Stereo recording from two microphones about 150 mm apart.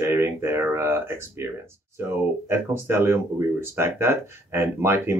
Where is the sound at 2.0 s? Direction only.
15° right (ahead or behind).